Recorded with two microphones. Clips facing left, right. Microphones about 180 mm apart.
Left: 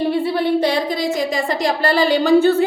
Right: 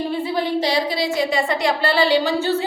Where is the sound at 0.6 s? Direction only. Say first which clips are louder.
Left 2 dB; 50° left (ahead or behind).